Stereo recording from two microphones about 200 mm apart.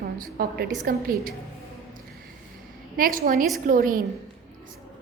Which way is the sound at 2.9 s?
45° right (ahead or behind).